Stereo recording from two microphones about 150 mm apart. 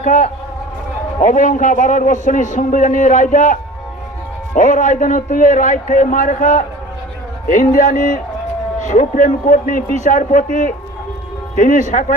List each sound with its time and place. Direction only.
0.0 s a man's voice: 60° left (ahead or behind)